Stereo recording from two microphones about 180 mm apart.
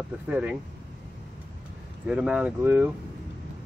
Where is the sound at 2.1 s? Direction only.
5° right (ahead or behind).